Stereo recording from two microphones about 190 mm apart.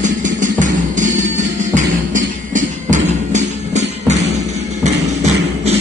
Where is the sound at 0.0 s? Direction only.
40° right (ahead or behind).